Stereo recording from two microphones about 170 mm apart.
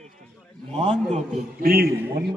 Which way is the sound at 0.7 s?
35° right (ahead or behind).